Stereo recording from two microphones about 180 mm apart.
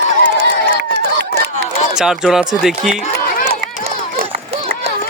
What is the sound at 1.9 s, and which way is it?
Speech, 5° right (ahead or behind).